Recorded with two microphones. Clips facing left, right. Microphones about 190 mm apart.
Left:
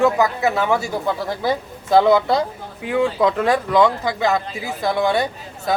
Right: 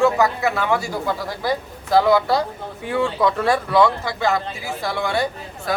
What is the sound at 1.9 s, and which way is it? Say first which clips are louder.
A man's voice: left 2 dB; 20° left (ahead or behind).